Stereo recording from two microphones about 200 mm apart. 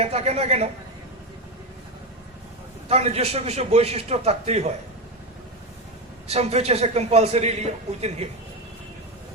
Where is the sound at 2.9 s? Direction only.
30° right (ahead or behind).